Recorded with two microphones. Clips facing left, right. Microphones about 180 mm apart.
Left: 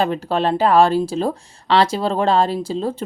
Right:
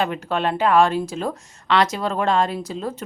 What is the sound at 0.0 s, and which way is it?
Speech, 35° left (ahead or behind).